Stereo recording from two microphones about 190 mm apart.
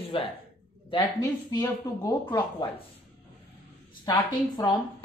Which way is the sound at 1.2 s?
15° left (ahead or behind).